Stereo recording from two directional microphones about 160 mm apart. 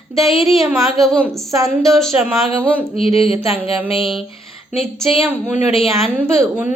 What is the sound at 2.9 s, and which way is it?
Speech, 35° left (ahead or behind).